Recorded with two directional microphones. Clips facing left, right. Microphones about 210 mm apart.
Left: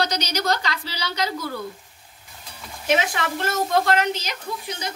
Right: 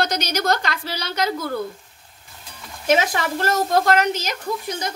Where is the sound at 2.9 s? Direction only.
45° right (ahead or behind).